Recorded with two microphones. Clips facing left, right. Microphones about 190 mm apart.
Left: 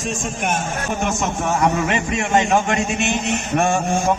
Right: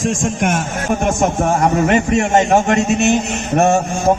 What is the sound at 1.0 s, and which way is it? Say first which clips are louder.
A man's voice: right 7 dB; 50° right (ahead or behind).